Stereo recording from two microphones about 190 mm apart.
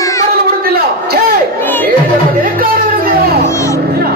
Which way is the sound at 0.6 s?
50° right (ahead or behind).